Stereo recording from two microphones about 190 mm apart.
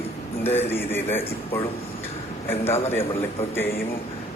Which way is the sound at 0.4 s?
10° left (ahead or behind).